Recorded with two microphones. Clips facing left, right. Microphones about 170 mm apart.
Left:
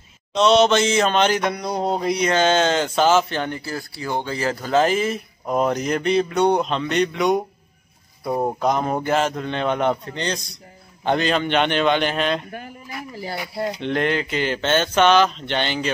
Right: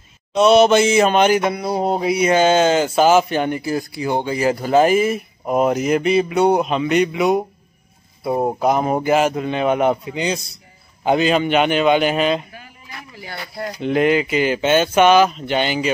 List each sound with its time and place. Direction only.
0.3 s mantra: 10° right (ahead or behind)
8.2 s speech: 5° right (ahead or behind)
8.5 s mantra: 10° right (ahead or behind)
12.4 s a sound: 50° left (ahead or behind)
13.7 s mantra: 5° right (ahead or behind)